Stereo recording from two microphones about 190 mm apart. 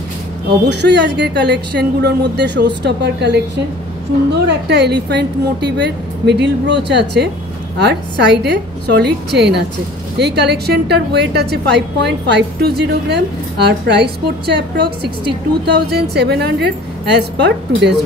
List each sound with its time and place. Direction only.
0.5 s a woman's voice: 65° right (ahead or behind)
4.5 s a woman's voice: 60° right (ahead or behind)